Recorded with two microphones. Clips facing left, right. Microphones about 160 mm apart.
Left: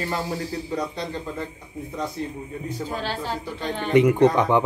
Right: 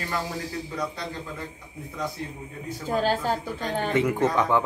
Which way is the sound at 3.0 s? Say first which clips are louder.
Right 4 dB; 45° right (ahead or behind).